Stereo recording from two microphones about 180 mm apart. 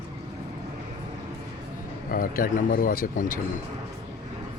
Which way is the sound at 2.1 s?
50° left (ahead or behind).